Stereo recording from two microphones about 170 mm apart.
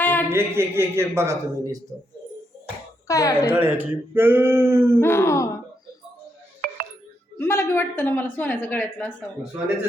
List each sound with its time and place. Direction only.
0.0 s a sound: 10° left (ahead or behind)
0.3 s speech: 15° right (ahead or behind)
3.1 s speech: 20° left (ahead or behind)
3.5 s speech: 10° right (ahead or behind)
4.9 s a woman's voice: 15° left (ahead or behind)
6.6 s music: 55° right (ahead or behind)
7.3 s a woman's voice: 15° left (ahead or behind)